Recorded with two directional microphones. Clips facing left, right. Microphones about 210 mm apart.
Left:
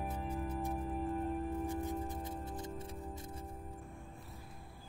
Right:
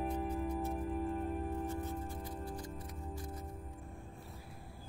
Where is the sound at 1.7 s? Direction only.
15° left (ahead or behind).